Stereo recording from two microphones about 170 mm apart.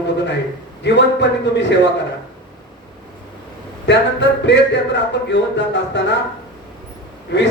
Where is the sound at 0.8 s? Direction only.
90° left.